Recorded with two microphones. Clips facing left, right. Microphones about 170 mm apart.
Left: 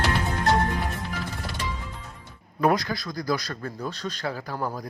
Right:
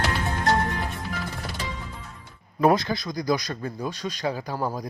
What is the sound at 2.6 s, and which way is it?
Speech, 25° right (ahead or behind).